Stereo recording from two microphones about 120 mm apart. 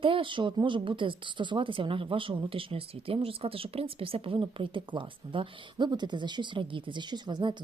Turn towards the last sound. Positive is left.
turn(degrees=-40)  # may be behind; listen again after turning